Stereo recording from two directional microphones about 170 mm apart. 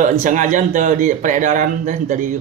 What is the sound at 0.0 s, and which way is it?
Speech, 50° right (ahead or behind).